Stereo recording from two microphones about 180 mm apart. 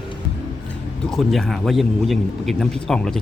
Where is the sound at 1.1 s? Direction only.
Centre (ahead or behind).